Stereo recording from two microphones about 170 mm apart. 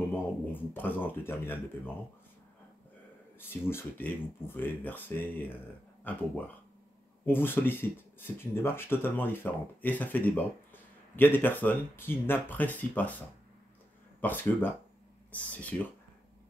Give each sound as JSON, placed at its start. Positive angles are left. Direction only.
{"t": 0.5, "sound": "speech", "side_deg": 10}
{"t": 3.3, "sound": "speech", "side_deg": 15}
{"t": 14.2, "sound": "speech", "side_deg": 10}